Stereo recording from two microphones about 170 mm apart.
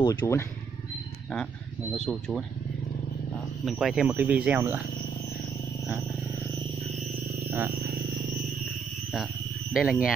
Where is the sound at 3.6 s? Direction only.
5° right (ahead or behind).